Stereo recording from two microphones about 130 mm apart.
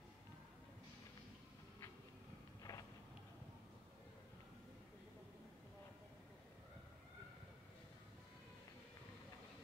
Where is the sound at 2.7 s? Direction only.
25° left (ahead or behind).